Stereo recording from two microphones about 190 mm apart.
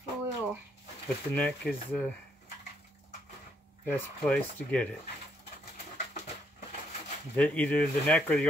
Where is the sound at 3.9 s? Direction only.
10° left (ahead or behind).